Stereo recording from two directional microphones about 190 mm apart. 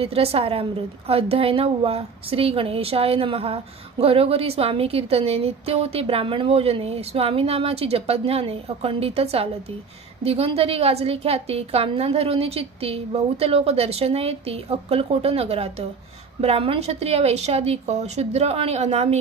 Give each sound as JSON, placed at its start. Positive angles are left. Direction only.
{"t": 0.0, "sound": "a woman's voice", "side_deg": -30}